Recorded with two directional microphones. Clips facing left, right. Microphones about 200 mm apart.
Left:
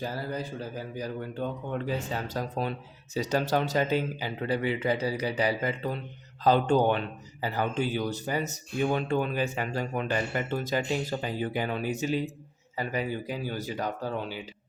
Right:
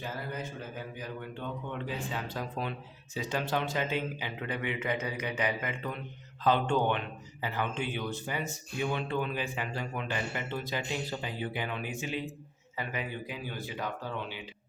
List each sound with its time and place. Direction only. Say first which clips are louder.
0.0 s speech: left 5 dB; 35° left (ahead or behind)